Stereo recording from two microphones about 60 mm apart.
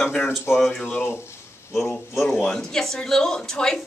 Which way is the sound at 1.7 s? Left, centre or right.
Centre.